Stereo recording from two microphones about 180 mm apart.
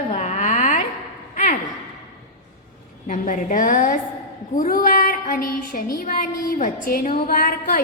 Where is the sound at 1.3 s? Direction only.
45° left (ahead or behind).